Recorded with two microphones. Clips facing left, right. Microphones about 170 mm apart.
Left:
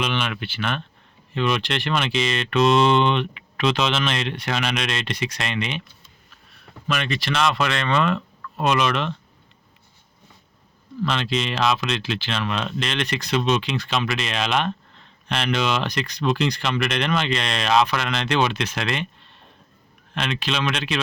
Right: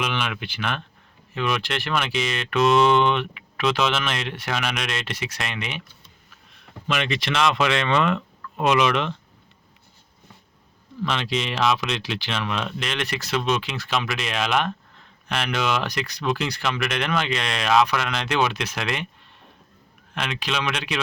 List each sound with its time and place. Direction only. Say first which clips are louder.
0.0 s speech: left 2 dB; 10° right (ahead or behind)
6.8 s speech: even; 20° right (ahead or behind)
11.0 s speech: left 2 dB; 15° right (ahead or behind)
20.1 s speech: left 2 dB; 10° right (ahead or behind)